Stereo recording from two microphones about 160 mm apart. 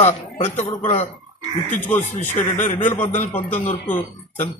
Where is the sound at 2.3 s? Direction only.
50° left (ahead or behind).